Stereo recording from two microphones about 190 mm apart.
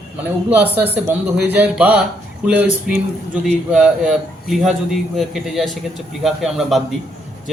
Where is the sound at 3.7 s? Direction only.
5° right (ahead or behind).